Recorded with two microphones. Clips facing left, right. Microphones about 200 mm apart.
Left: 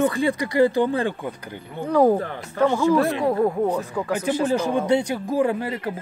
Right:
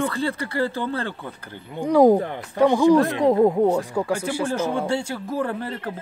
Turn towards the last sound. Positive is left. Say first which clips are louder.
# left 4 dB
turn(degrees=10)  # may be behind; listen again after turning